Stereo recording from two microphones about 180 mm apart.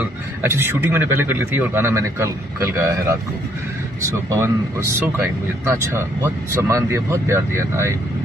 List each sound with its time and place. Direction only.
0.4 s speech: 15° right (ahead or behind)